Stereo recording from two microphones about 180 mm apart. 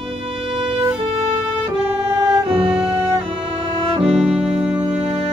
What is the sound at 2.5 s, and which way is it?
Music, 30° right (ahead or behind).